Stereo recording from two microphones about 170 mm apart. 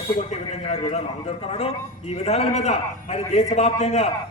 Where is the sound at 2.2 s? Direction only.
40° left (ahead or behind).